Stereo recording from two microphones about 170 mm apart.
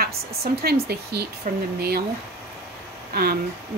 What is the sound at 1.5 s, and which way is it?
Speech, 55° right (ahead or behind).